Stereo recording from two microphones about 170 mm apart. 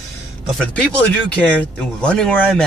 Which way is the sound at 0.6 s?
5° left (ahead or behind).